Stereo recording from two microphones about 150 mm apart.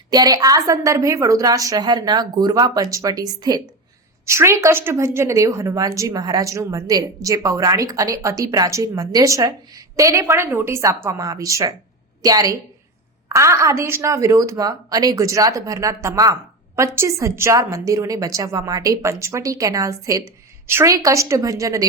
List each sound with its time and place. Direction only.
0.1 s a woman's voice: 25° right (ahead or behind)